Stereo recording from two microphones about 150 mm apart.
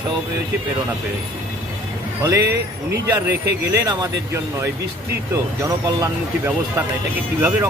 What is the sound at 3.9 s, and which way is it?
Speech, 20° right (ahead or behind).